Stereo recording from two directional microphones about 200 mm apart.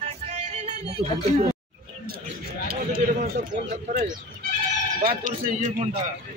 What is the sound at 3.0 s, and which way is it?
Speech, 45° right (ahead or behind).